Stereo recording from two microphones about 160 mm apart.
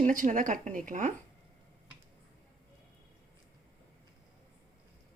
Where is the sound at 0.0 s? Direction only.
55° right (ahead or behind).